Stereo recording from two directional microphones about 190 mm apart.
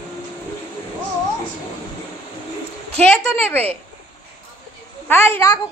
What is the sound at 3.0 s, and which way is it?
Speech, 5° left (ahead or behind).